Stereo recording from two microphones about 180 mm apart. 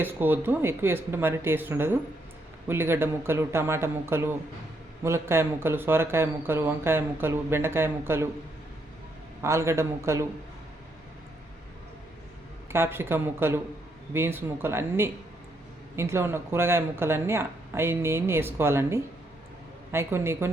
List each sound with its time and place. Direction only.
0.0 s speech: 10° right (ahead or behind)
9.4 s speech: 15° right (ahead or behind)
12.7 s speech: 15° right (ahead or behind)